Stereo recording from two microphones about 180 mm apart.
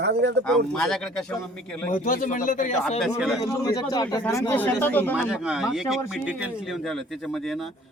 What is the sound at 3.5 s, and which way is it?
A man's voice, 20° left (ahead or behind).